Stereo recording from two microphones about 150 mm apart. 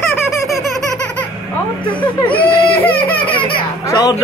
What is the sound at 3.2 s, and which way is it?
Speech, 35° left (ahead or behind).